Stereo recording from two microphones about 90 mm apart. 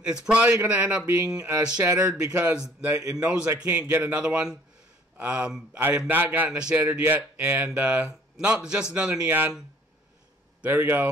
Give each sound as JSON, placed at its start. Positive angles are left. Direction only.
{"t": 0.0, "sound": "speech", "side_deg": -10}
{"t": 4.2, "sound": "speech", "side_deg": -10}
{"t": 10.6, "sound": "speech", "side_deg": -25}